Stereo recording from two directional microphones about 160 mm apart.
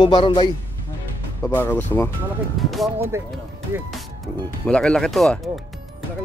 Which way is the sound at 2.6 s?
Centre (ahead or behind).